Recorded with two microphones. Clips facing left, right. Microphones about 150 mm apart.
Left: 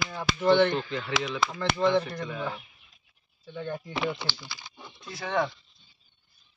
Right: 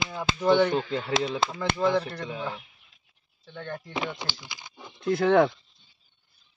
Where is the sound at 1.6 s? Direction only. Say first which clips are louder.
Left 1 dB; 5° right (ahead or behind).